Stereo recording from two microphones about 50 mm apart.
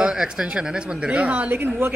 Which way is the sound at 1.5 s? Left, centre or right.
Right.